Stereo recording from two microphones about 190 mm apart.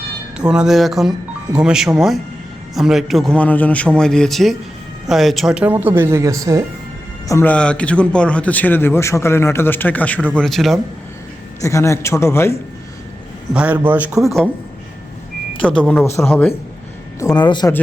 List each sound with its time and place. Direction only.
0.3 s a man's voice: 5° right (ahead or behind)
7.3 s a man's voice: 10° left (ahead or behind)
11.6 s a man's voice: 15° left (ahead or behind)
13.5 s a man's voice: 5° right (ahead or behind)
15.6 s a man's voice: 5° left (ahead or behind)
17.2 s a man's voice: 20° left (ahead or behind)